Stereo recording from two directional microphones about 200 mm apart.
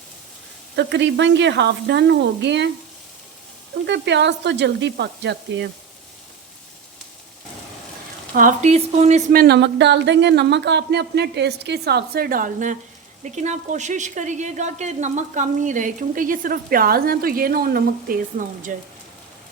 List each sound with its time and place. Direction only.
0.8 s speech: 60° right (ahead or behind)
3.8 s speech: 60° right (ahead or behind)
8.4 s speech: 40° right (ahead or behind)